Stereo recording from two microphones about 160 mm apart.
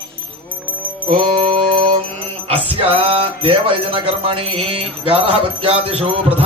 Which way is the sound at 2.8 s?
35° right (ahead or behind).